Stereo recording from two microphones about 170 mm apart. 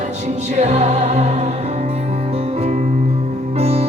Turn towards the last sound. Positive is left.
turn(degrees=-35)  # may be behind; listen again after turning